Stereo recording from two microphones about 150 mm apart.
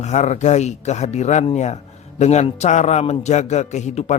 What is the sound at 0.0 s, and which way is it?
A man's voice, 50° left (ahead or behind).